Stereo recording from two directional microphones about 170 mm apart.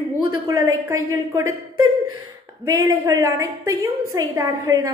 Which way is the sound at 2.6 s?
20° right (ahead or behind).